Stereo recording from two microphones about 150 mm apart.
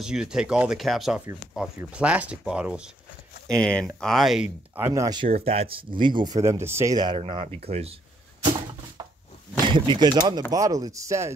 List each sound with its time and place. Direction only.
0.0 s speech: 5° right (ahead or behind)
3.6 s speech: 5° left (ahead or behind)
4.7 s speech: 20° right (ahead or behind)
5.2 s speech: 40° right (ahead or behind); by 7.0 s 15° right (ahead or behind)
7.0 s speech: 35° right (ahead or behind)
9.7 s speech: 30° right (ahead or behind)